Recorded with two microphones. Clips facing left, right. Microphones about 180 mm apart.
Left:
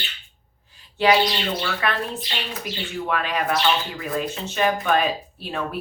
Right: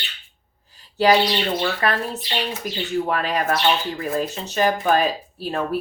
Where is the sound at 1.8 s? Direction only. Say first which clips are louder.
Right 2 dB; 40° right (ahead or behind).